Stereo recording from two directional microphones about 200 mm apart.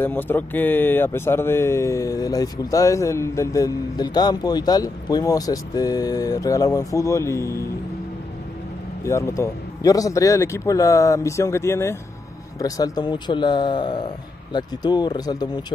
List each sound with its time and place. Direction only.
0.0 s speech: 10° left (ahead or behind)
9.0 s speech: 15° left (ahead or behind)